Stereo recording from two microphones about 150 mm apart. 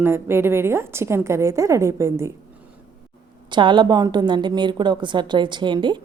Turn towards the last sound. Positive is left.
turn(degrees=-30)  # may be behind; listen again after turning